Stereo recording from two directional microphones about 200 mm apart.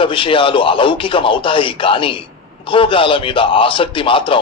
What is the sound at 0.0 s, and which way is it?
A man's voice, 25° left (ahead or behind).